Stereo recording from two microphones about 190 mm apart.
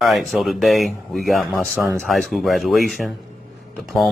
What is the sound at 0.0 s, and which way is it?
Speech, centre (ahead or behind).